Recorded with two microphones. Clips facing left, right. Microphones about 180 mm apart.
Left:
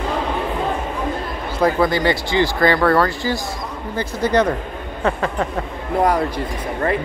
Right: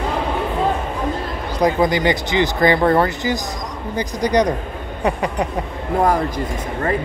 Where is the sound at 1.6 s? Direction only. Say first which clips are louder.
Even; 15° right (ahead or behind).